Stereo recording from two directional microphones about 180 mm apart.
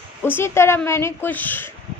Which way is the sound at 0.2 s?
15° left (ahead or behind).